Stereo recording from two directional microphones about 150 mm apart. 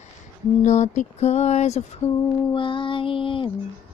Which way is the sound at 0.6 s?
50° left (ahead or behind).